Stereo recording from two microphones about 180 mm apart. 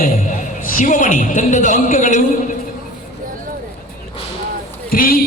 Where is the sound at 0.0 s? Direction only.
45° left (ahead or behind).